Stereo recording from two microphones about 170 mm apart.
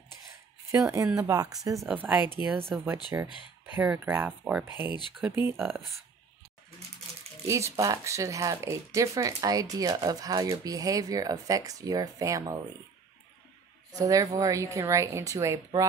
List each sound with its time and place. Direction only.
0.7 s speech: 20° right (ahead or behind)
1.8 s speech: 5° right (ahead or behind)
7.4 s speech: 15° right (ahead or behind)
13.9 s speech: 20° right (ahead or behind)